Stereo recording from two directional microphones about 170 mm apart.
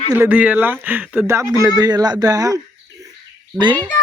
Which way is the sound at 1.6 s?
20° right (ahead or behind).